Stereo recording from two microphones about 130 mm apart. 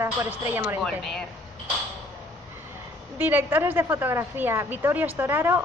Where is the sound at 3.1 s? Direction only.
15° right (ahead or behind).